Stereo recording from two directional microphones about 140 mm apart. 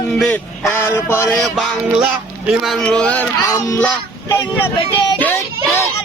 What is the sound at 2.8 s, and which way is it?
Speech, 10° left (ahead or behind).